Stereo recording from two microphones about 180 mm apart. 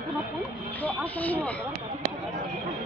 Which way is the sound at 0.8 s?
10° left (ahead or behind).